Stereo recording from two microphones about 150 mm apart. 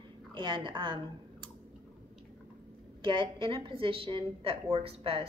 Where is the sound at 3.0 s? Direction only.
35° right (ahead or behind).